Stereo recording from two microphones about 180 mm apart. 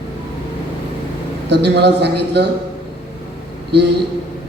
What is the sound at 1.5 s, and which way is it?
Speech, 70° right (ahead or behind).